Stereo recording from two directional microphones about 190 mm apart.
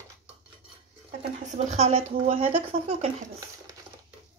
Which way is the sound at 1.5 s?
35° right (ahead or behind).